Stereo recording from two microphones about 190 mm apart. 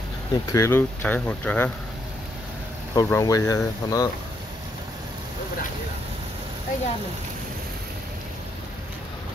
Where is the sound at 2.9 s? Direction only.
20° left (ahead or behind).